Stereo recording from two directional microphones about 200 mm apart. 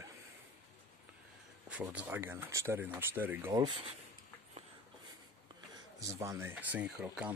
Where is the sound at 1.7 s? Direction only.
5° right (ahead or behind).